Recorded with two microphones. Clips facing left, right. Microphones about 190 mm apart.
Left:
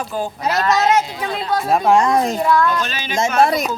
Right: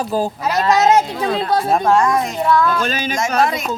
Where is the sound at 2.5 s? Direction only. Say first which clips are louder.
Right 3 dB; centre (ahead or behind).